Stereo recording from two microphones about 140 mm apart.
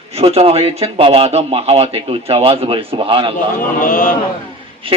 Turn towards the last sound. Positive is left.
turn(degrees=-40)  # may be behind; listen again after turning